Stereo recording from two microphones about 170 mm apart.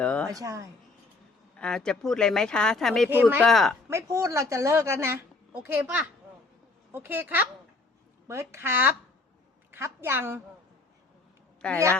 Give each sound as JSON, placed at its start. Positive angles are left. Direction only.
{"t": 0.0, "sound": "speech", "side_deg": 5}
{"t": 0.3, "sound": "speech", "side_deg": -20}
{"t": 1.5, "sound": "speech", "side_deg": 5}
{"t": 3.1, "sound": "a woman's voice", "side_deg": -10}
{"t": 3.4, "sound": "speech", "side_deg": 0}
{"t": 3.8, "sound": "a woman's voice", "side_deg": -15}
{"t": 11.6, "sound": "speech", "side_deg": 5}